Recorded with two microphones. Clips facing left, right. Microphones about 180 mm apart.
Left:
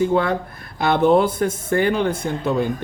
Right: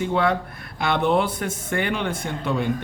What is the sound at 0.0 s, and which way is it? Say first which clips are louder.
Speech: left 3 dB; 40° left (ahead or behind).